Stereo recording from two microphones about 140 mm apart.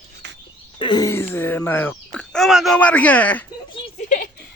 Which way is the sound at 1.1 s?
20° left (ahead or behind).